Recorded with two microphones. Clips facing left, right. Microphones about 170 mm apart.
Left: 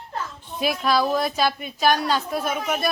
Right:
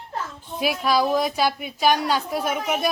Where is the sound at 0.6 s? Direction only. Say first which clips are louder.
Even; 10° right (ahead or behind).